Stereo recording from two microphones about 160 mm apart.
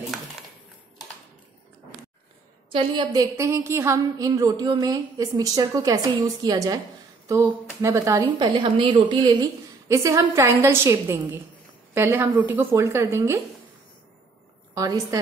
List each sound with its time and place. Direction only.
2.7 s a woman's voice: 25° right (ahead or behind)
14.7 s a woman's voice: 20° right (ahead or behind)